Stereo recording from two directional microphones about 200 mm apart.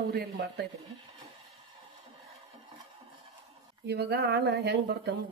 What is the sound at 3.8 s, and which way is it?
Speech, 55° right (ahead or behind).